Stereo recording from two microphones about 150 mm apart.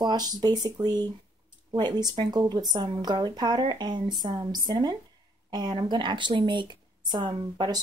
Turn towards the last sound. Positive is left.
turn(degrees=-30)  # may be behind; listen again after turning